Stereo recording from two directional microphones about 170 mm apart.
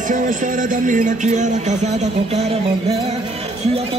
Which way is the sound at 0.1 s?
50° right (ahead or behind).